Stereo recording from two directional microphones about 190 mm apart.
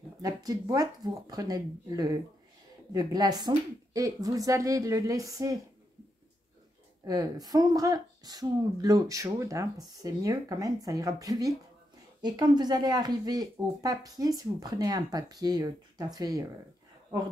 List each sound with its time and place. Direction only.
0.2 s speech: 20° right (ahead or behind)
7.1 s speech: 20° right (ahead or behind)